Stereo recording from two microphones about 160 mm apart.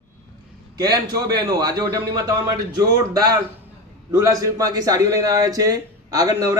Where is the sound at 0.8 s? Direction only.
25° right (ahead or behind).